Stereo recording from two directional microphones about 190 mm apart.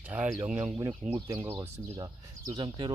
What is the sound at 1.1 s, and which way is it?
Speech, 25° right (ahead or behind).